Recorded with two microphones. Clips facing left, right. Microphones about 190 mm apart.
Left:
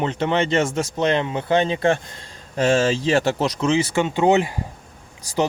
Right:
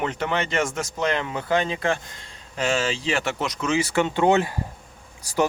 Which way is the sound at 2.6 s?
45° left (ahead or behind).